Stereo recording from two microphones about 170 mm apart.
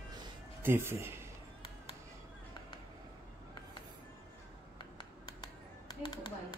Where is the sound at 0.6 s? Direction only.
15° right (ahead or behind).